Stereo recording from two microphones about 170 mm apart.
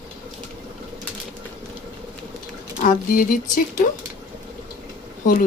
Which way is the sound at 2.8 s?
55° left (ahead or behind).